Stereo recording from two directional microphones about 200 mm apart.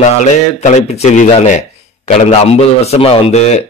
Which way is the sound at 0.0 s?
35° left (ahead or behind).